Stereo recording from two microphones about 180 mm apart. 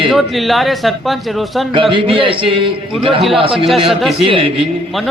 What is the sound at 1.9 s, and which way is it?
A man's voice, 30° right (ahead or behind).